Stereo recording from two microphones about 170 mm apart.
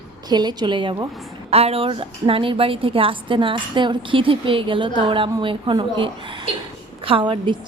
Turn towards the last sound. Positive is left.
turn(degrees=-30)  # may be behind; listen again after turning